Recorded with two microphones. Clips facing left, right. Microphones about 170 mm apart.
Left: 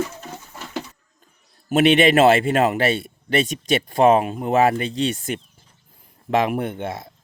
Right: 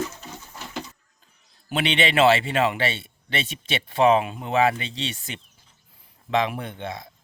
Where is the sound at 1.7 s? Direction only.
45° left (ahead or behind).